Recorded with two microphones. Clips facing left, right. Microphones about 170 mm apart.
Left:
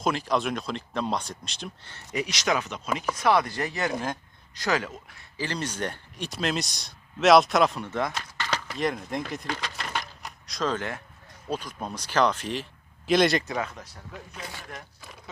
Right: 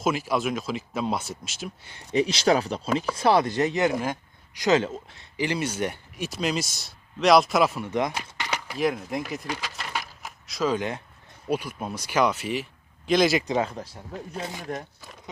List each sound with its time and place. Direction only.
0.0 s speech: 5° right (ahead or behind)
2.1 s speech: 30° right (ahead or behind)
3.9 s speech: 10° right (ahead or behind)
13.5 s speech: 30° right (ahead or behind)